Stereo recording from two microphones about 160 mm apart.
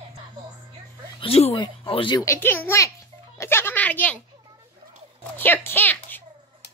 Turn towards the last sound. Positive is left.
turn(degrees=10)  # may be behind; listen again after turning